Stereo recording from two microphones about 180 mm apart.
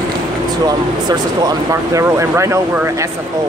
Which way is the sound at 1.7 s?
15° right (ahead or behind).